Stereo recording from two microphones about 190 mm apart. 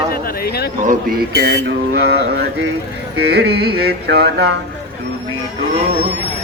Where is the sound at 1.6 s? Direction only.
60° right (ahead or behind).